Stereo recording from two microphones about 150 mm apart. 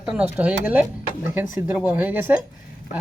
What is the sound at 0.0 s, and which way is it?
Speech, 5° right (ahead or behind).